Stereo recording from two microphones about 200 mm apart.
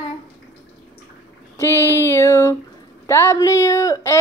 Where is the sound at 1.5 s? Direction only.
15° left (ahead or behind).